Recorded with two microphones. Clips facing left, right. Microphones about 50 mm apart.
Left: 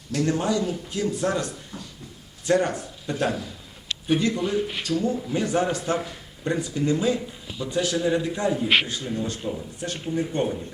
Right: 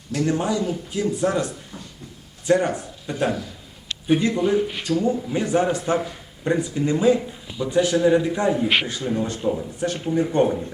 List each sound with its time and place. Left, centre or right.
0.1 s speech: centre
4.1 s speech: right